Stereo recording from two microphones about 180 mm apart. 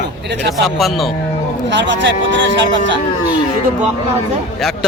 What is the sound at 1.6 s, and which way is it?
Speech, 80° right.